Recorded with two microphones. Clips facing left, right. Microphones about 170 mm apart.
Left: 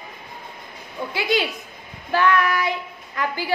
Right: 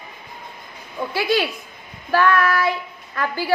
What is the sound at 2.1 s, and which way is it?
Child singing, 20° left (ahead or behind).